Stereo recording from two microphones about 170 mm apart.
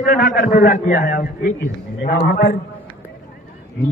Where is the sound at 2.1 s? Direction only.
70° left (ahead or behind).